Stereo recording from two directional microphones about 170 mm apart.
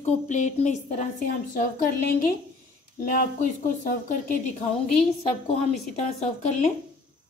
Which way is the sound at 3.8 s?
45° left (ahead or behind).